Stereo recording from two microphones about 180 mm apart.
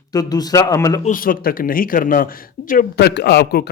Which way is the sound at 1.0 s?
50° left (ahead or behind).